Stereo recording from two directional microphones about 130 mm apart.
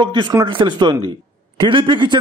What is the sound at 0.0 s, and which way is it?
Speech, 35° right (ahead or behind).